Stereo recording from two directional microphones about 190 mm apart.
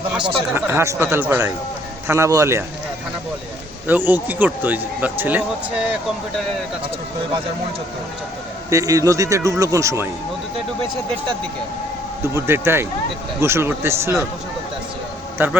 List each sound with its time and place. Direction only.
0.1 s speech: 5° right (ahead or behind)
3.8 s speech: 10° right (ahead or behind)
8.7 s speech: 15° right (ahead or behind)
12.2 s speech: 15° right (ahead or behind)
15.4 s speech: 10° right (ahead or behind)